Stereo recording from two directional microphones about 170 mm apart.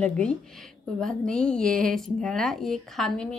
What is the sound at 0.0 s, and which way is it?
Speech, 5° left (ahead or behind).